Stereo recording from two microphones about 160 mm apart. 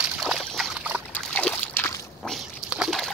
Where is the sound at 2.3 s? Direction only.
Centre (ahead or behind).